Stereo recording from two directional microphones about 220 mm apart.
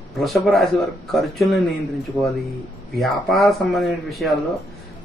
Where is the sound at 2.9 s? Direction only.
Centre (ahead or behind).